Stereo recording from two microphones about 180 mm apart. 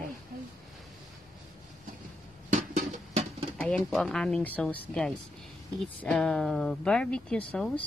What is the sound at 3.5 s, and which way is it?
Speech, 5° left (ahead or behind).